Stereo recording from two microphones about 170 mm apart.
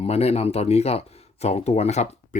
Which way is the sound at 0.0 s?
35° left (ahead or behind).